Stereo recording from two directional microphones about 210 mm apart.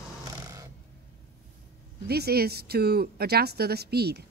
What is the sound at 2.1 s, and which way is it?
A woman's voice, 50° right (ahead or behind).